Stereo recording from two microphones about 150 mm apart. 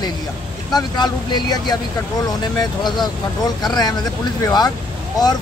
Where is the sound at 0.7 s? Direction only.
30° left (ahead or behind).